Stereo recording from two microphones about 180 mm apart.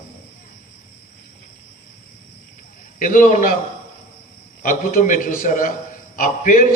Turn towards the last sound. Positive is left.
turn(degrees=50)  # may be behind; listen again after turning